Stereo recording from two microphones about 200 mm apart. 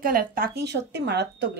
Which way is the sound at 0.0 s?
45° right (ahead or behind).